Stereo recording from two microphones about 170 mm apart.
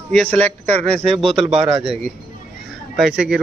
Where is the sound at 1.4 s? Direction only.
35° right (ahead or behind).